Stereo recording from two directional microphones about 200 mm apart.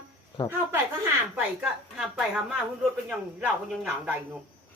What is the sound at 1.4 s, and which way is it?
A woman's voice, 5° right (ahead or behind).